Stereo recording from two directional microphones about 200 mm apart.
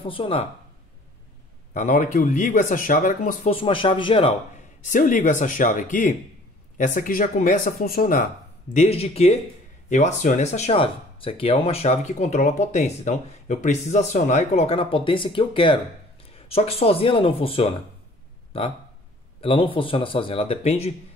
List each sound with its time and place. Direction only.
0.0 s speech: 25° left (ahead or behind)
1.7 s speech: 40° left (ahead or behind)
3.5 s speech: 25° left (ahead or behind)
4.8 s speech: 40° left (ahead or behind)
8.7 s speech: 30° left (ahead or behind)